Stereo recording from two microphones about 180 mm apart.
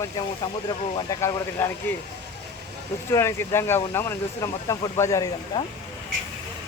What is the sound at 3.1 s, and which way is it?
Speech, 15° left (ahead or behind).